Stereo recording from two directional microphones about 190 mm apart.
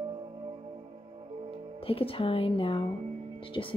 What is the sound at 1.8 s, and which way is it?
Speech, 30° left (ahead or behind).